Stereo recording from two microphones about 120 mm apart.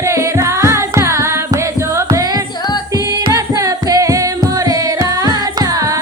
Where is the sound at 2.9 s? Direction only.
30° right (ahead or behind).